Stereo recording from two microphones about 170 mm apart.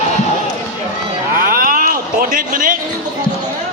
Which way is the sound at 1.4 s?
55° right (ahead or behind).